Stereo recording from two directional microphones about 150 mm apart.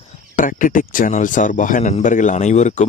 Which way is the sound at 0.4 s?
60° left (ahead or behind).